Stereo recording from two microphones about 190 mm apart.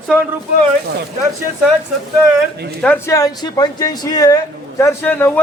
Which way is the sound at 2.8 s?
15° left (ahead or behind).